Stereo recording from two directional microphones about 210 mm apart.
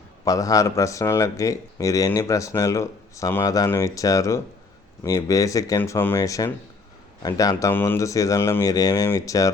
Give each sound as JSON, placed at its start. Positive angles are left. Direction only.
{"t": 0.3, "sound": "speech", "side_deg": 15}